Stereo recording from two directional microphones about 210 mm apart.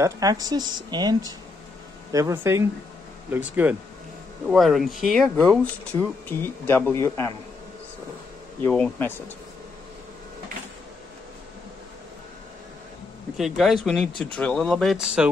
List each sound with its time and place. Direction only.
0.0 s speech: 15° right (ahead or behind); by 7.3 s 10° left (ahead or behind)
8.6 s speech: 5° left (ahead or behind)
13.4 s speech: centre (ahead or behind)